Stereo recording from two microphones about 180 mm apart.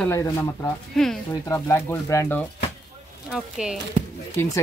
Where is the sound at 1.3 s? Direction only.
15° left (ahead or behind).